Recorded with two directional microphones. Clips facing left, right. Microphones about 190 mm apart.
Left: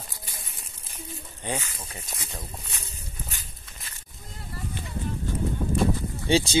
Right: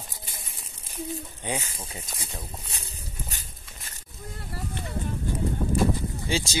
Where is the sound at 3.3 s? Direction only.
45° right (ahead or behind).